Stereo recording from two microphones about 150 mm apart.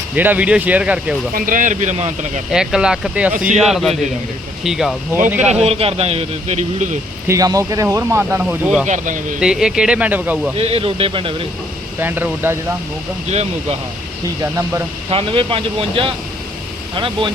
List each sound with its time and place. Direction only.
0.2 s speech: 10° right (ahead or behind)
1.3 s a man's voice: 65° right (ahead or behind); by 2.4 s 50° right (ahead or behind)
2.5 s speech: 5° right (ahead or behind)
5.4 s a man's voice: 45° right (ahead or behind)
7.3 s speech: 25° right (ahead or behind)
8.2 s speech: 5° right (ahead or behind)
8.9 s speech: 60° right (ahead or behind)
9.4 s speech: 5° right (ahead or behind)
10.6 s speech: 40° right (ahead or behind)
11.9 s speech: 15° right (ahead or behind)
13.3 s a man's voice: 45° right (ahead or behind)
14.4 s speech: 15° right (ahead or behind)
15.1 s speech: 35° right (ahead or behind)